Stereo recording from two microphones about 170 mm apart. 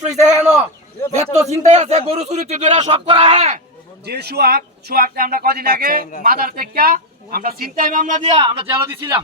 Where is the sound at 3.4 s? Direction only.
40° right (ahead or behind).